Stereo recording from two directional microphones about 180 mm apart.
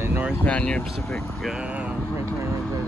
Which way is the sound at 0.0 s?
10° right (ahead or behind).